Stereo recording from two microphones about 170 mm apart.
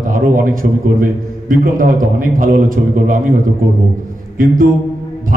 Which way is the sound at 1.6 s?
55° right (ahead or behind).